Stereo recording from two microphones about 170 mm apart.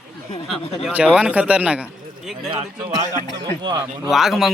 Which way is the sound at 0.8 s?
10° right (ahead or behind).